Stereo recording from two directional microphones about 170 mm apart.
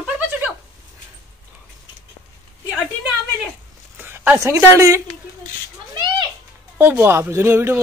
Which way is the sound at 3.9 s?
10° right (ahead or behind).